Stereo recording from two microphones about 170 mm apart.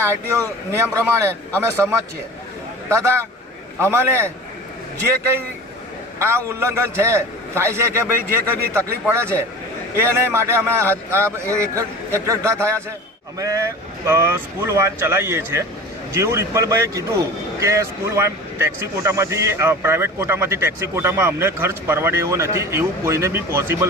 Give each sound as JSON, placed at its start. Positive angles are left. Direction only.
{"t": 0.0, "sound": "speech", "side_deg": -15}
{"t": 6.1, "sound": "speech", "side_deg": -15}
{"t": 9.0, "sound": "speech", "side_deg": -15}